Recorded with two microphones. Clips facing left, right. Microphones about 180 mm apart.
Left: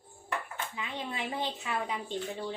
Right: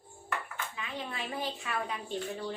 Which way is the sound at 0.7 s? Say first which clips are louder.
Left 2 dB; 20° left (ahead or behind).